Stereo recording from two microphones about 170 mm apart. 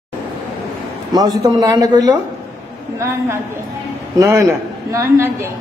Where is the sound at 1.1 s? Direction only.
20° right (ahead or behind).